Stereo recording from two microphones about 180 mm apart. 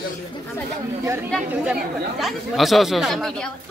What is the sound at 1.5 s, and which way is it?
Speech, 5° right (ahead or behind).